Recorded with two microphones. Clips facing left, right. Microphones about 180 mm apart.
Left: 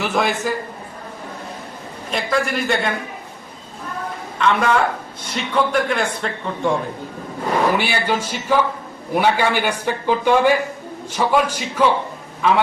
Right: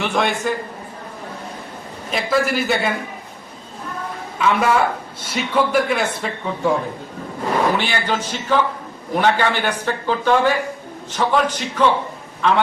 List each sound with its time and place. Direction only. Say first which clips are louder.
0.0 s a man's voice: even; centre (ahead or behind)
2.0 s a man's voice: right 2 dB; centre (ahead or behind)
4.4 s a man's voice: even; 5° right (ahead or behind)
7.8 s speech: left 1 dB; 10° left (ahead or behind)